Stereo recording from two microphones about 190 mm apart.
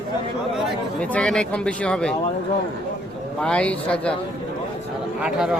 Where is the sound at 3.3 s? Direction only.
5° left (ahead or behind).